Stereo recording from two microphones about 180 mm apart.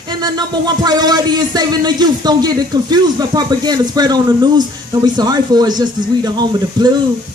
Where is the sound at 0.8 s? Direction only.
20° right (ahead or behind).